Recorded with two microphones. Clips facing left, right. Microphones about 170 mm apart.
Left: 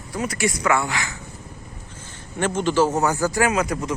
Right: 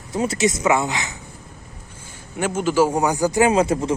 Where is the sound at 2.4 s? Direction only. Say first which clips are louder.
Right 1 dB; 5° right (ahead or behind); by 3.9 s 30° right (ahead or behind).